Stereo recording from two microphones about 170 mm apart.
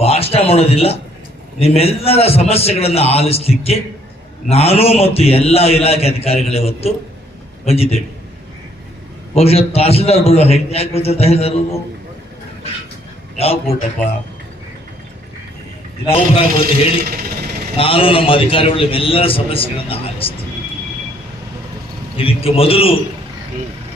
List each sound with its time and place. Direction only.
0.0 s a man's voice: 35° left (ahead or behind)
9.3 s a man's voice: 35° left (ahead or behind)
13.4 s a man's voice: 35° left (ahead or behind)
16.5 s a man's voice: 60° right (ahead or behind)
17.7 s a man's voice: 35° left (ahead or behind)
22.2 s a man's voice: 35° left (ahead or behind)